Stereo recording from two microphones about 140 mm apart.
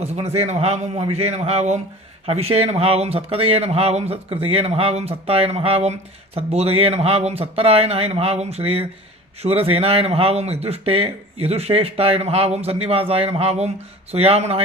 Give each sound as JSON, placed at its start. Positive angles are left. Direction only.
{"t": 0.0, "sound": "speech", "side_deg": -50}